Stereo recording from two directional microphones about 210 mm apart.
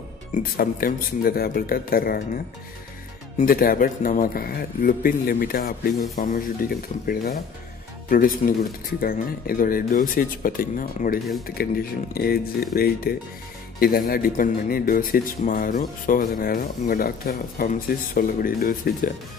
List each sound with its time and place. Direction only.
0.3 s a man's voice: 45° left (ahead or behind)